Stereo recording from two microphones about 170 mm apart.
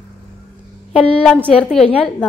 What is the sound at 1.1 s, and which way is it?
A woman's voice, 5° left (ahead or behind).